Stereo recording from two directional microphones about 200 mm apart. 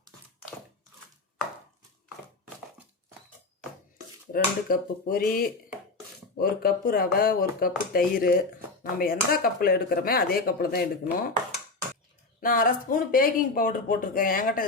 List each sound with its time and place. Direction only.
4.3 s speech: 45° left (ahead or behind)
12.4 s speech: 45° left (ahead or behind)